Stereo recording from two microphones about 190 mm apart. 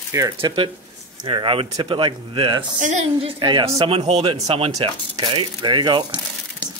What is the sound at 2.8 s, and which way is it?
A woman's voice, 40° right (ahead or behind).